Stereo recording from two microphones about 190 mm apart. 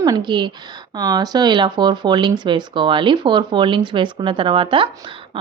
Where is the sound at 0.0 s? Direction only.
20° right (ahead or behind).